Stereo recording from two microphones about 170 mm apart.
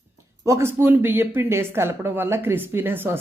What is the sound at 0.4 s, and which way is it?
A woman's voice, 15° right (ahead or behind).